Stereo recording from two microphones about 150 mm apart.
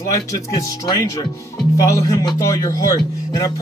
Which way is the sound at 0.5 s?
25° left (ahead or behind).